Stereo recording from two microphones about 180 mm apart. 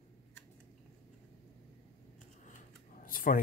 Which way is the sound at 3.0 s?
50° left (ahead or behind).